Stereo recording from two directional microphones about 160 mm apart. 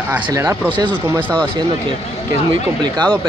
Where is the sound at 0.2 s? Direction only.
20° right (ahead or behind).